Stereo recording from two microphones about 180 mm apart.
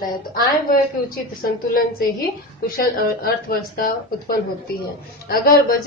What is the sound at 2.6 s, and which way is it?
A woman's voice, 55° left (ahead or behind).